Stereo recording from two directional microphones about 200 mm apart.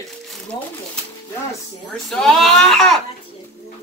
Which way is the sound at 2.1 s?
Centre (ahead or behind).